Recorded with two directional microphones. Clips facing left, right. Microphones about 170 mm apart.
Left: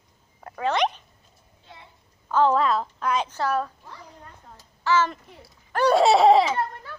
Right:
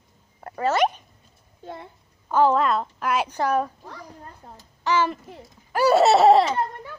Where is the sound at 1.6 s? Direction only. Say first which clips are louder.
Right 12 dB; 50° right (ahead or behind).